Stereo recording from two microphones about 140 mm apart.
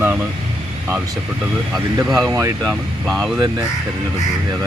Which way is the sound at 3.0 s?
Centre (ahead or behind).